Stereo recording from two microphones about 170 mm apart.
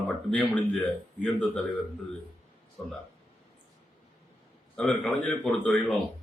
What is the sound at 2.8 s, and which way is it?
Speech, centre (ahead or behind).